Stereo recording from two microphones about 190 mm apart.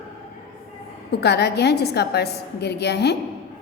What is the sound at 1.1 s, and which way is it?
A woman's voice, 60° left (ahead or behind).